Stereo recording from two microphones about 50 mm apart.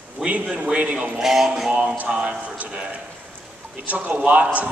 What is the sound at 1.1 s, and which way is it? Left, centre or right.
Music, centre.